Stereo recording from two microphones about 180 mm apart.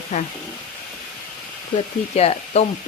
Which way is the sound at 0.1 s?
40° left (ahead or behind).